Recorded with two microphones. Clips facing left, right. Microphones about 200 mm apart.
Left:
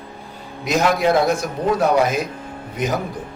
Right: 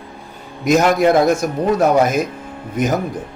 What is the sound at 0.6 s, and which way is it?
Speech, 50° right (ahead or behind).